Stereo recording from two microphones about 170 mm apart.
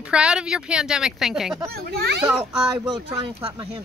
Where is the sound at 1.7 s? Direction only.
65° right (ahead or behind).